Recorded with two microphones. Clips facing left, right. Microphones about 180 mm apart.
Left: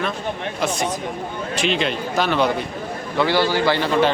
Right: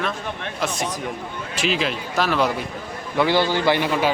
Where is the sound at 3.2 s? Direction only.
15° right (ahead or behind).